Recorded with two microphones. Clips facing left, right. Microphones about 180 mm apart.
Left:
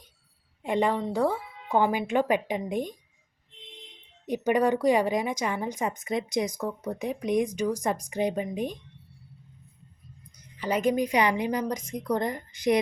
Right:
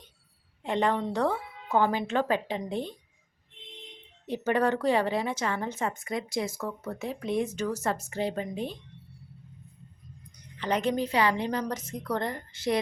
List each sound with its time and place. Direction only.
0.6 s speech: 10° left (ahead or behind)
4.3 s speech: 15° left (ahead or behind)
10.6 s speech: 10° left (ahead or behind)